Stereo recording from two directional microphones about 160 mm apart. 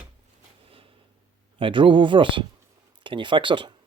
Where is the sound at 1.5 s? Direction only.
30° right (ahead or behind).